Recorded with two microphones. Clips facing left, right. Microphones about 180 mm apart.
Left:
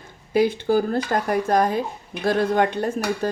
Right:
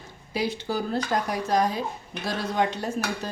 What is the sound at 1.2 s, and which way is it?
Cutlery, 55° left (ahead or behind).